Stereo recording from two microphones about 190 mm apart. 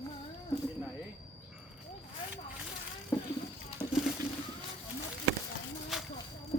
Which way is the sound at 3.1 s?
10° left (ahead or behind).